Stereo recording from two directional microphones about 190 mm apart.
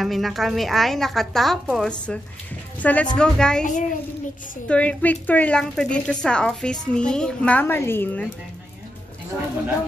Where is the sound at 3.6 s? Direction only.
45° left (ahead or behind).